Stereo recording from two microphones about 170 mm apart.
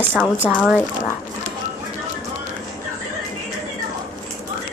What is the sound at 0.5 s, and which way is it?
Speech, 5° right (ahead or behind).